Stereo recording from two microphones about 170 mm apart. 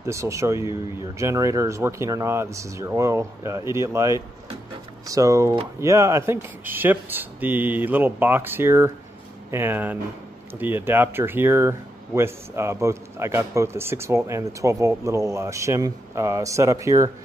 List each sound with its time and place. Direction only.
0.0 s speech: 15° right (ahead or behind)